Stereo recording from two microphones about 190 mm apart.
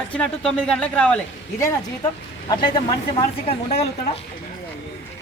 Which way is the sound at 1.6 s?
25° left (ahead or behind).